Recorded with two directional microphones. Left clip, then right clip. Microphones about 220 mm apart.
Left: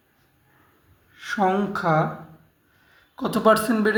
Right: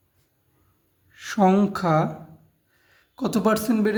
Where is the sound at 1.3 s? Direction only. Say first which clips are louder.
Right 2 dB; 50° right (ahead or behind).